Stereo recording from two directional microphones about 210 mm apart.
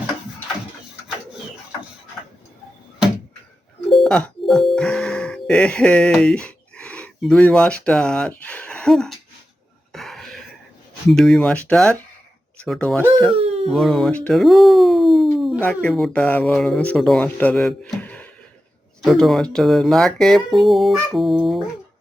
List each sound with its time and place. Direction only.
3.8 s doorbell: centre (ahead or behind)
9.9 s cough: centre (ahead or behind)
11.1 s speech: centre (ahead or behind)
13.3 s a sound: 30° right (ahead or behind)
13.7 s speech: centre (ahead or behind)